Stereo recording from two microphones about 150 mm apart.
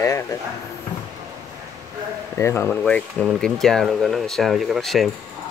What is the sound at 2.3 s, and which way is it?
Speech, 15° left (ahead or behind).